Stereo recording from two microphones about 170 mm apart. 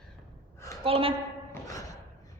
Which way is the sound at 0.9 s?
35° right (ahead or behind).